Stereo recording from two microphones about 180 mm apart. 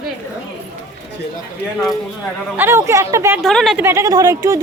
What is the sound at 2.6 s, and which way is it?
Speech, 15° right (ahead or behind).